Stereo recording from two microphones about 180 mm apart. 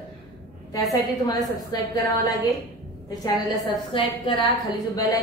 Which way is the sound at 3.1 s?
25° left (ahead or behind).